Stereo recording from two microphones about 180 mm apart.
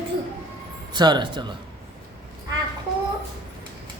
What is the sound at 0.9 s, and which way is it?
Speech, 25° right (ahead or behind).